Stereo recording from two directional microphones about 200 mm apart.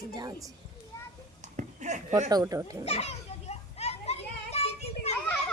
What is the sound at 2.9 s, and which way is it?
Children playing, 30° left (ahead or behind).